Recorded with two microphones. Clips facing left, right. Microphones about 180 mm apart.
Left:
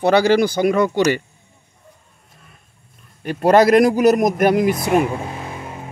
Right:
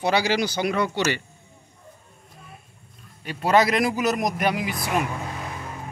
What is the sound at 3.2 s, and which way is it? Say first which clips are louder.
Speech: left 7 dB; 50° left (ahead or behind).